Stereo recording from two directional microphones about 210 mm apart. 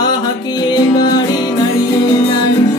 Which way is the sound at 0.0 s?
20° left (ahead or behind).